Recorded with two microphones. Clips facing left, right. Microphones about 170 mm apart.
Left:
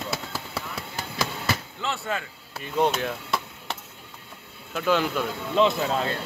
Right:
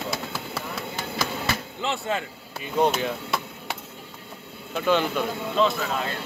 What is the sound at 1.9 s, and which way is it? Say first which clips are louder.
Speech: right 2 dB; 25° right (ahead or behind).